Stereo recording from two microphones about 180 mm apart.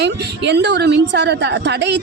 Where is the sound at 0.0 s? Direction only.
70° right (ahead or behind).